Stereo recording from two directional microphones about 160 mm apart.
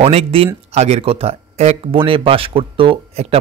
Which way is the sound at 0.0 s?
40° right (ahead or behind).